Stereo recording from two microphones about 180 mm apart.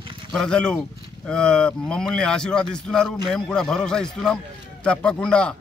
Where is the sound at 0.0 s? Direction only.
25° right (ahead or behind).